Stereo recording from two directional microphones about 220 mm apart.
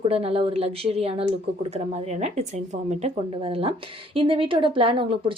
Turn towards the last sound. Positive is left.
turn(degrees=-25)  # may be behind; listen again after turning